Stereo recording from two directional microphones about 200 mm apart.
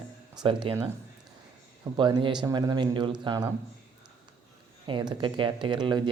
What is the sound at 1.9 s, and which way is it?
Speech, 25° right (ahead or behind).